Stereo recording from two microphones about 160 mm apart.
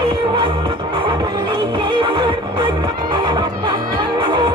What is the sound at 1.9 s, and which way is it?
Music, 30° right (ahead or behind).